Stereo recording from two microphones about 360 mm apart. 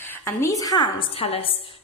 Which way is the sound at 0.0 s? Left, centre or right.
Centre.